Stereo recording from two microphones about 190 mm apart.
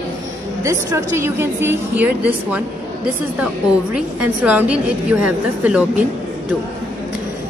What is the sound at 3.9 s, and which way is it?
A woman's voice, 10° right (ahead or behind).